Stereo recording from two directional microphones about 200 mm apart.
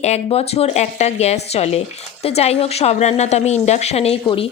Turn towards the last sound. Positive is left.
turn(degrees=30)  # may be behind; listen again after turning